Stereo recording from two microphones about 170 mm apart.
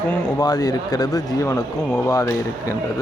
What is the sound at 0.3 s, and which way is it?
Speech, 25° left (ahead or behind).